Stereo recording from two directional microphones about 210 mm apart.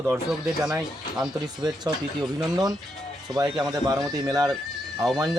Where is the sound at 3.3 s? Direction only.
15° right (ahead or behind).